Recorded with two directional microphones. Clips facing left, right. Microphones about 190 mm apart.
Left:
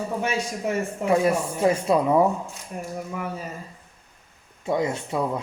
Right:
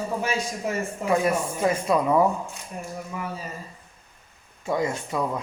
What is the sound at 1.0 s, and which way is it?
Speech, 25° left (ahead or behind).